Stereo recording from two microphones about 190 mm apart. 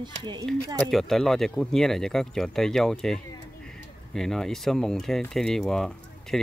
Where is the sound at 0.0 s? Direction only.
25° right (ahead or behind).